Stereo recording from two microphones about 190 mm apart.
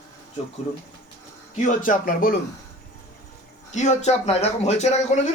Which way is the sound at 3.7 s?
35° left (ahead or behind).